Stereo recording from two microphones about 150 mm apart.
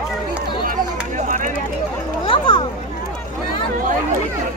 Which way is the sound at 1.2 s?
55° right (ahead or behind).